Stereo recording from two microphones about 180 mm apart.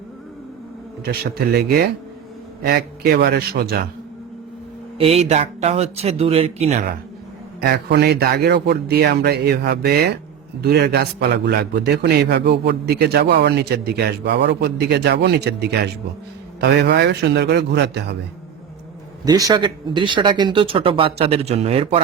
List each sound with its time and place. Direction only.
1.0 s a man's voice: 60° right (ahead or behind)
4.9 s speech: 35° right (ahead or behind)
7.6 s a man's voice: 65° right (ahead or behind)
19.2 s speech: 20° right (ahead or behind)